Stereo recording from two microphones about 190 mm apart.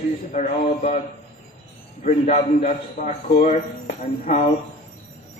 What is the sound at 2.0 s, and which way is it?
A man's voice, 40° left (ahead or behind).